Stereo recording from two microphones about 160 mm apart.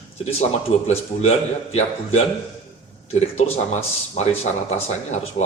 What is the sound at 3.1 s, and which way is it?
Speech, 40° left (ahead or behind).